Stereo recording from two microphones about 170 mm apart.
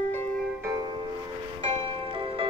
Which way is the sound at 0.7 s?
25° right (ahead or behind).